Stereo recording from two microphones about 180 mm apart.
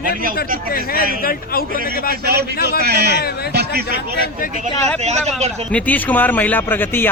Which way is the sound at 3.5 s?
65° right (ahead or behind).